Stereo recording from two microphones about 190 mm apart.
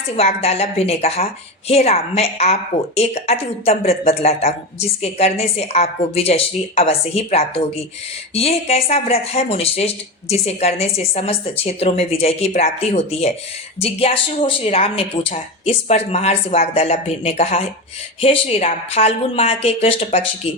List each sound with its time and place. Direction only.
0.4 s a woman's voice: 35° left (ahead or behind)